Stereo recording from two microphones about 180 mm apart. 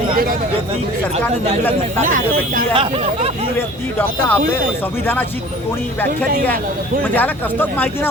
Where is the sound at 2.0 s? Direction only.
50° right (ahead or behind).